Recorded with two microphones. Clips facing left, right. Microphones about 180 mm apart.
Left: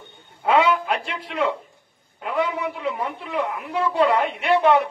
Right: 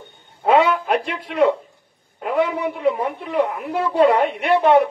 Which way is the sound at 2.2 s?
40° right (ahead or behind).